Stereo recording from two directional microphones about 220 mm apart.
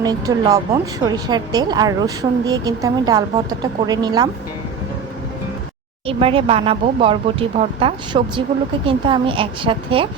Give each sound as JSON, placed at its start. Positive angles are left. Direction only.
{"t": 0.0, "sound": "speech", "side_deg": -15}
{"t": 6.1, "sound": "speech", "side_deg": -25}